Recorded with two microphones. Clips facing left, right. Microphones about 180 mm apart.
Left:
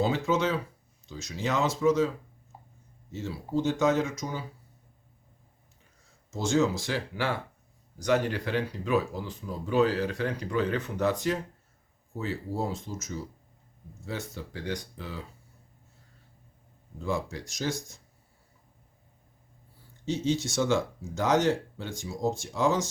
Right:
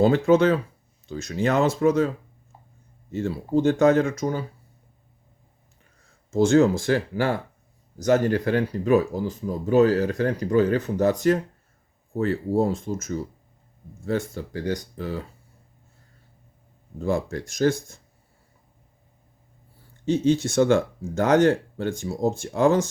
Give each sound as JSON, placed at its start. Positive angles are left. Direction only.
{"t": 0.0, "sound": "speech", "side_deg": -55}
{"t": 3.1, "sound": "speech", "side_deg": -55}
{"t": 6.3, "sound": "speech", "side_deg": -55}
{"t": 12.1, "sound": "speech", "side_deg": -55}
{"t": 17.0, "sound": "speech", "side_deg": -50}
{"t": 20.1, "sound": "speech", "side_deg": -55}